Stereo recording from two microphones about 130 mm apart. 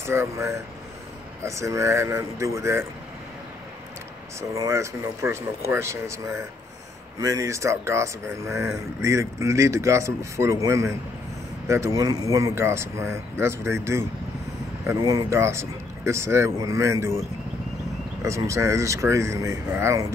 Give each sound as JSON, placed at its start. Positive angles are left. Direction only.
{"t": 0.0, "sound": "speech", "side_deg": -20}
{"t": 4.4, "sound": "speech", "side_deg": -20}
{"t": 18.2, "sound": "speech", "side_deg": -25}